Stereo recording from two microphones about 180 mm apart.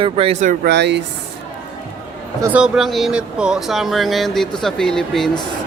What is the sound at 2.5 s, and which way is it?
Speech, 5° right (ahead or behind).